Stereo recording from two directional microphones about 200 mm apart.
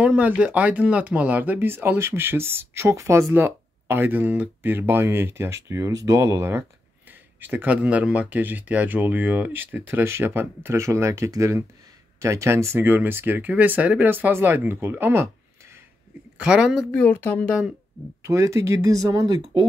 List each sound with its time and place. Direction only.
0.0 s speech: 5° right (ahead or behind)
16.3 s speech: 5° right (ahead or behind)
18.2 s speech: 15° right (ahead or behind)